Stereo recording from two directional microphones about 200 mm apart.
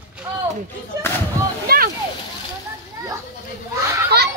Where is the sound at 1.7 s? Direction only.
50° right (ahead or behind).